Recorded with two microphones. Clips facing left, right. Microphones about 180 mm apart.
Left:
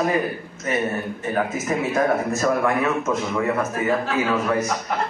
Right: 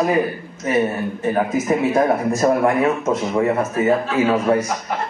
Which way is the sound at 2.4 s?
30° right (ahead or behind).